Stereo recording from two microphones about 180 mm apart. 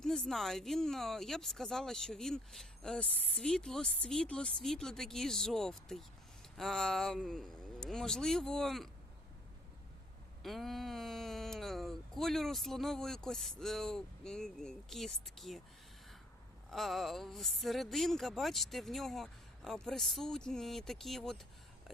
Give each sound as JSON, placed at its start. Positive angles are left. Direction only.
{"t": 0.0, "sound": "speech", "side_deg": 0}
{"t": 10.4, "sound": "speech", "side_deg": 0}
{"t": 16.6, "sound": "speech", "side_deg": 0}